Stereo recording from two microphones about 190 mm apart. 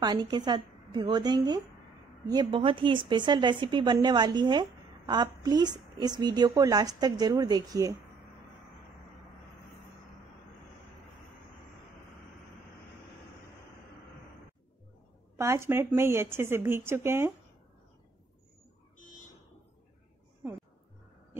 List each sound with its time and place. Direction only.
0.0 s a woman's voice: 25° right (ahead or behind)
15.3 s speech: 15° right (ahead or behind)